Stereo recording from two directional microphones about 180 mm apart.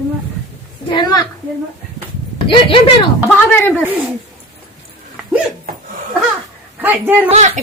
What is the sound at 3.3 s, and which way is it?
Speech, 5° left (ahead or behind).